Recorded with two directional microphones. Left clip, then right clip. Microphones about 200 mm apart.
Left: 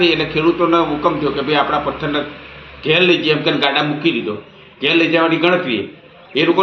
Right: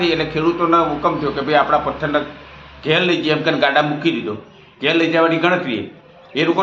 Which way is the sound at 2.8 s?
15° right (ahead or behind).